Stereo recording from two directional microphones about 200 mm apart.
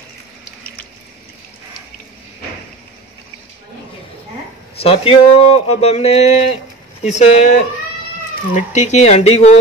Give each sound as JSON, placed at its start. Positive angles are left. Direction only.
{"t": 4.8, "sound": "speech", "side_deg": 30}